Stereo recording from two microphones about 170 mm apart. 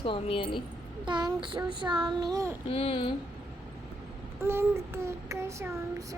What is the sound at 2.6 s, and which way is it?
Speech, 35° left (ahead or behind).